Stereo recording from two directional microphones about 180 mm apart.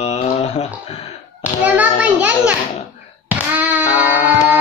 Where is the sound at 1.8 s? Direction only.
10° right (ahead or behind).